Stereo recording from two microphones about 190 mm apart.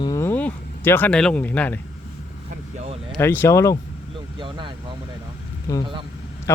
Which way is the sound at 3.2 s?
10° left (ahead or behind).